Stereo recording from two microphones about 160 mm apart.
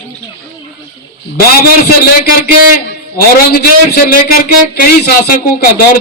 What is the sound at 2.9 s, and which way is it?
A man's voice, 75° left (ahead or behind).